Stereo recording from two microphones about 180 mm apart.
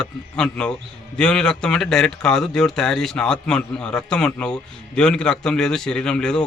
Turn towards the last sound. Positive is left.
turn(degrees=5)  # may be behind; listen again after turning